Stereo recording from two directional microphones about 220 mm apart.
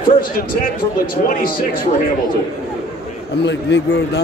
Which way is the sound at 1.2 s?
40° left (ahead or behind).